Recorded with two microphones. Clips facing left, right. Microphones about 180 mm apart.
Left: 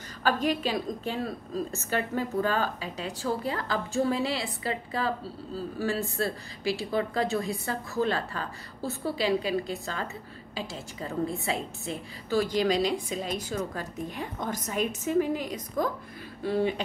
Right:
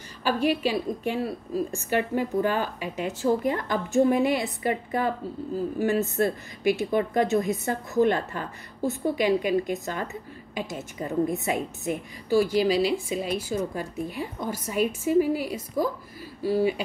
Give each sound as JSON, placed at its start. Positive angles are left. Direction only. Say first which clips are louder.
{"t": 0.2, "sound": "a woman's voice", "louder": "right 3 dB", "side_deg": -10}